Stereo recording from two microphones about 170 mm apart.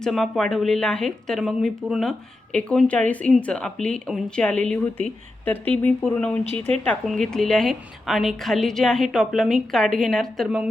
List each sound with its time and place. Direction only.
0.0 s a woman's voice: centre (ahead or behind)
6.5 s speech: 40° right (ahead or behind)
6.8 s a woman's voice: 5° left (ahead or behind)